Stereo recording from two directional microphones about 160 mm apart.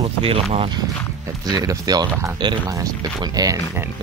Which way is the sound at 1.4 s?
25° right (ahead or behind).